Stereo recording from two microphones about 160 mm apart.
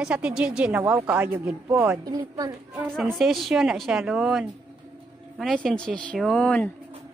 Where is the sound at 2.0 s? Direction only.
25° right (ahead or behind).